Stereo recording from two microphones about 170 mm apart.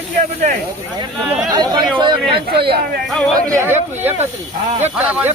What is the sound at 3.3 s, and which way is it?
Speech, 15° right (ahead or behind).